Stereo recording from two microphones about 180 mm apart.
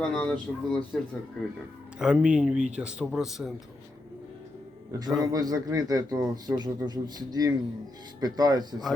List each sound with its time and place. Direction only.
0.0 s speech: 5° left (ahead or behind)
2.0 s speech: 5° right (ahead or behind)
4.9 s a man's voice: 20° right (ahead or behind)